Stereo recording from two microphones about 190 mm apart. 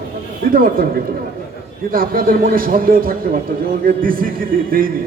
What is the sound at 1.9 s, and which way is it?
Speech, 50° right (ahead or behind).